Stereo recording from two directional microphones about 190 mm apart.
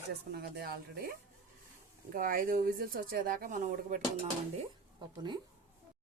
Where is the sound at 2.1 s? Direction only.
45° right (ahead or behind).